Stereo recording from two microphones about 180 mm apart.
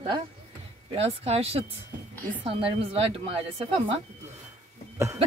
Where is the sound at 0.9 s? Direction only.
35° right (ahead or behind).